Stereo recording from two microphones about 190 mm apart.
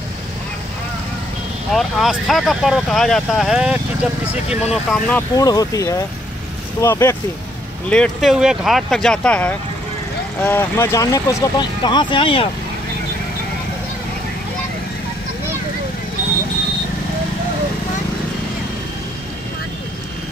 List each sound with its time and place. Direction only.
1.7 s speech: centre (ahead or behind)
5.3 s speech: 20° left (ahead or behind)
7.9 s speech: centre (ahead or behind); by 12.4 s 30° left (ahead or behind)